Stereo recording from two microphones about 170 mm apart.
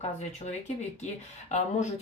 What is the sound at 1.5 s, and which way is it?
Speech, 40° left (ahead or behind).